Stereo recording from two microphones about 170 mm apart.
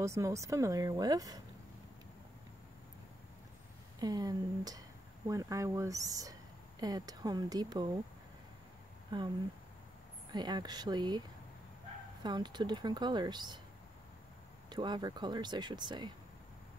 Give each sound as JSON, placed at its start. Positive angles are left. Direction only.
{"t": 0.0, "sound": "speech", "side_deg": -15}
{"t": 4.0, "sound": "speech", "side_deg": -25}
{"t": 9.1, "sound": "speech", "side_deg": -25}
{"t": 10.3, "sound": "speech", "side_deg": -25}
{"t": 14.7, "sound": "speech", "side_deg": -25}